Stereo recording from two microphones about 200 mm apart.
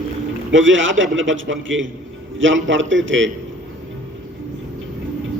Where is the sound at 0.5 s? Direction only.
70° right (ahead or behind).